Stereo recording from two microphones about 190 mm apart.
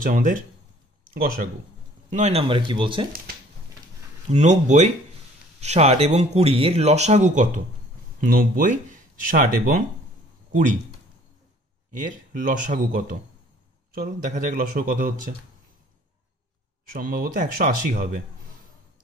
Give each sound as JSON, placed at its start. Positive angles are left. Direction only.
{"t": 0.0, "sound": "a man's voice", "side_deg": -45}
{"t": 2.0, "sound": "speech", "side_deg": -35}
{"t": 4.3, "sound": "speech", "side_deg": -40}
{"t": 11.9, "sound": "a man's voice", "side_deg": -45}
{"t": 16.9, "sound": "a man's voice", "side_deg": -50}